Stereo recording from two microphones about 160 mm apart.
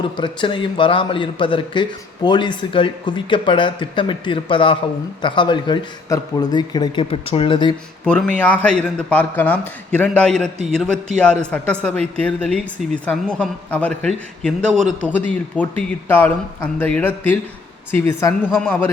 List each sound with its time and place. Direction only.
0.0 s a man's voice: 30° left (ahead or behind)
8.0 s a woman's voice: 5° left (ahead or behind)